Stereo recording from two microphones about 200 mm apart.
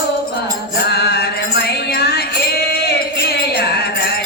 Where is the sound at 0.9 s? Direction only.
55° left (ahead or behind).